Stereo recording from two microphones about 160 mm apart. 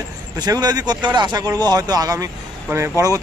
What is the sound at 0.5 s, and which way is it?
Speech, 25° right (ahead or behind).